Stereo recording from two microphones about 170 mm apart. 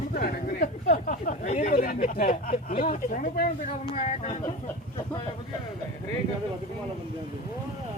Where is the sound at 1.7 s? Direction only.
50° left (ahead or behind).